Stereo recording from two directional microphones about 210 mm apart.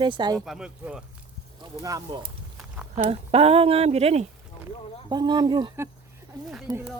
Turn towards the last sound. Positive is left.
turn(degrees=-15)  # may be behind; listen again after turning